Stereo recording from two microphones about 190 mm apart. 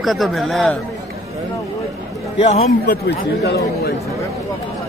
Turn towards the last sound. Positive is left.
turn(degrees=60)  # may be behind; listen again after turning